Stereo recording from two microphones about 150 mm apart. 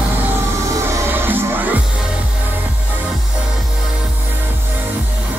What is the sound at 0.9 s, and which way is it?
Music, 15° right (ahead or behind).